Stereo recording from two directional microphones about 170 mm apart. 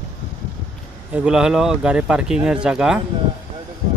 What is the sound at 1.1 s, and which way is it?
Speech, 5° right (ahead or behind).